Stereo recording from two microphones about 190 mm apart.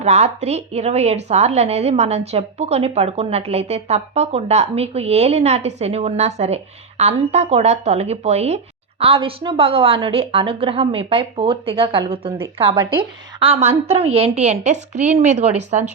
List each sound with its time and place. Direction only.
0.0 s a woman's voice: 35° right (ahead or behind)